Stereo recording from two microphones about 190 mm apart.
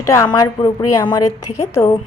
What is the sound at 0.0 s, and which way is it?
A woman's voice, 15° left (ahead or behind).